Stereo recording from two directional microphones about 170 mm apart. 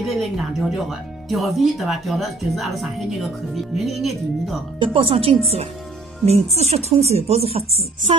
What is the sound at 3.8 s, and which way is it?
Speech, centre (ahead or behind).